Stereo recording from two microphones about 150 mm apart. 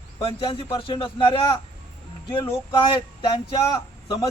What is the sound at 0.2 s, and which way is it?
Speech, 40° left (ahead or behind).